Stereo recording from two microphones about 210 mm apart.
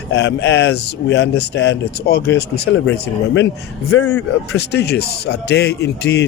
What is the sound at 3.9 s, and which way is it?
Speech, 90° left.